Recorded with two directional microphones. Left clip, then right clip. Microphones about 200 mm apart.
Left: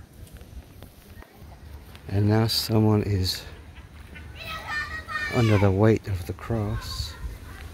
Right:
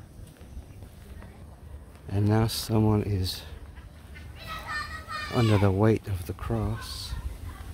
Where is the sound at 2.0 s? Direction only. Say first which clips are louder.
Left 3 dB; 5° left (ahead or behind).